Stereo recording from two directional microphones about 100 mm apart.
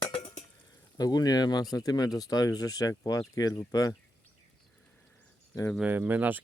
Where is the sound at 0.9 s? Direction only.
40° left (ahead or behind).